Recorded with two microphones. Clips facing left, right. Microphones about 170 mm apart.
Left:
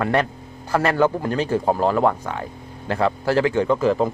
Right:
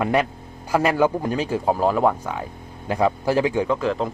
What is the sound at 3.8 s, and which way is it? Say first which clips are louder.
Speech: left 4 dB; centre (ahead or behind).